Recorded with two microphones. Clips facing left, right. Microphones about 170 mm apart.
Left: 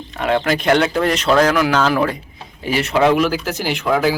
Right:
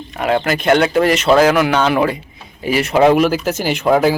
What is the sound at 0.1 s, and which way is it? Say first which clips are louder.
Speech: right 1 dB; 5° right (ahead or behind).